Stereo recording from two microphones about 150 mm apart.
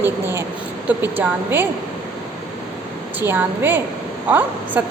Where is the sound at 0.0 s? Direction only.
15° right (ahead or behind).